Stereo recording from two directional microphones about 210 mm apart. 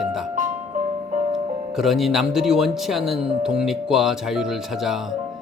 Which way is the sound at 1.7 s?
Centre (ahead or behind).